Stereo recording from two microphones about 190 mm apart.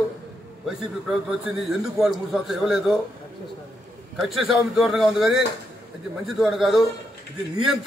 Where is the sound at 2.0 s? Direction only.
Centre (ahead or behind).